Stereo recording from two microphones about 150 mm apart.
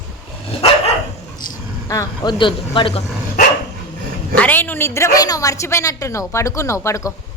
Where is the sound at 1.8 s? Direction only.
20° left (ahead or behind); by 3.0 s 35° left (ahead or behind).